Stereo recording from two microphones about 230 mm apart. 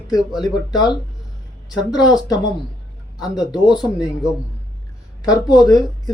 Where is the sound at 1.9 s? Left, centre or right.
Centre.